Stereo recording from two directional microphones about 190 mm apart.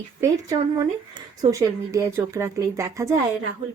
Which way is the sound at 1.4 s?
15° right (ahead or behind).